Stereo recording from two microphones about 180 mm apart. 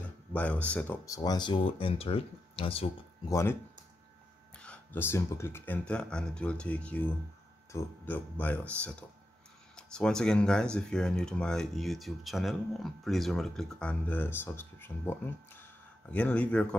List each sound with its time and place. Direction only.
0.3 s speech: 10° left (ahead or behind)
1.0 s speech: 20° left (ahead or behind)
3.3 s speech: 15° left (ahead or behind)
4.6 s speech: 10° left (ahead or behind)